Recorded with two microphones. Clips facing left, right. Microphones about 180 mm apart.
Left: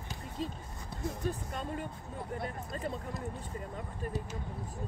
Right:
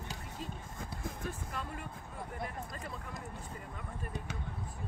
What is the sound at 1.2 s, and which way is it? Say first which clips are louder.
Speech: left 6 dB; 30° left (ahead or behind).